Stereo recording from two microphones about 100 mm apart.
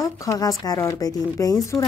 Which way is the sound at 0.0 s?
35° left (ahead or behind).